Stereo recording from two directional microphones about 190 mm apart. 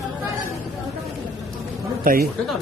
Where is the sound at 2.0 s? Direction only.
50° right (ahead or behind).